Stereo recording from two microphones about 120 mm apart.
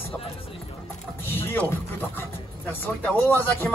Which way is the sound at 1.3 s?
15° left (ahead or behind).